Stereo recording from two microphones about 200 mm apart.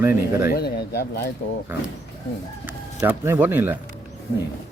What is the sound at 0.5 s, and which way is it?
Speech, 50° left (ahead or behind).